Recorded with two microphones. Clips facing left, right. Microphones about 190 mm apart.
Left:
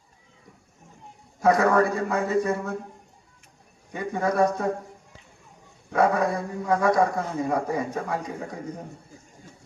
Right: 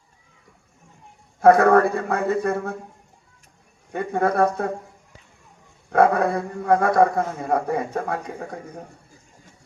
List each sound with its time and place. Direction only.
1.4 s a man's voice: 55° right (ahead or behind)
3.9 s a man's voice: 60° right (ahead or behind)
5.9 s a man's voice: 55° right (ahead or behind)